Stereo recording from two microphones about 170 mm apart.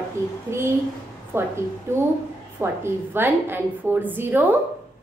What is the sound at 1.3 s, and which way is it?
A woman's voice, 15° right (ahead or behind).